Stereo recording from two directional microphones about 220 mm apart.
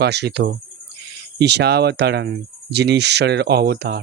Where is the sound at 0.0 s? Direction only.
50° right (ahead or behind).